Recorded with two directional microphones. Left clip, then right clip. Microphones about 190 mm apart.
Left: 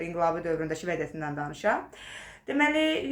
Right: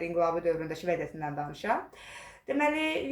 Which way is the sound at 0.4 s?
25° left (ahead or behind).